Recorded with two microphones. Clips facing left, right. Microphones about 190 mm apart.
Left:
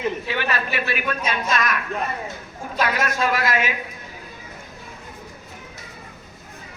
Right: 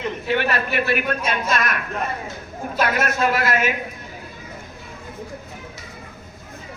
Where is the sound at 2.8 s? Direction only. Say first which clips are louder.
Right 2 dB; 50° right (ahead or behind).